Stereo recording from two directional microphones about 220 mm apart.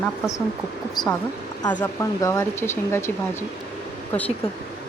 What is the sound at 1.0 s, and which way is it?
Speech, 20° left (ahead or behind).